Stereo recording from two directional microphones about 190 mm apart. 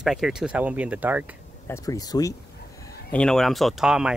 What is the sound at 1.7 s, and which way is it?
Speech, 15° left (ahead or behind).